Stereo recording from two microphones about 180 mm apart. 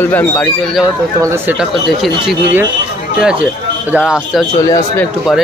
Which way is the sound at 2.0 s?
Centre (ahead or behind).